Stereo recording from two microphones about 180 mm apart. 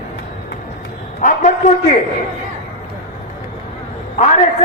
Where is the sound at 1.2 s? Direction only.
45° left (ahead or behind).